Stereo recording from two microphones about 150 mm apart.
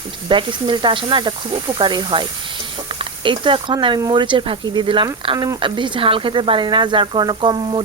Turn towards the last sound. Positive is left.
turn(degrees=-35)  # may be behind; listen again after turning